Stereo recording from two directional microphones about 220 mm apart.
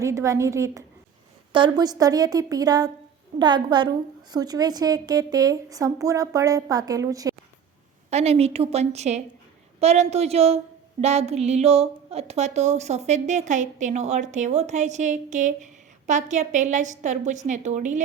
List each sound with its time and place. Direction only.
0.0 s a woman's voice: 15° right (ahead or behind)
8.1 s a woman's voice: 30° right (ahead or behind)